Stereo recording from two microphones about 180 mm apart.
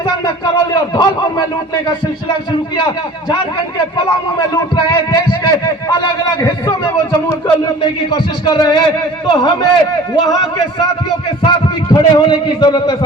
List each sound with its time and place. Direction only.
0.0 s speech: 25° left (ahead or behind)
2.5 s a man's voice: 25° left (ahead or behind)
3.8 s a sound: 25° left (ahead or behind)
11.4 s a man's voice: 20° left (ahead or behind)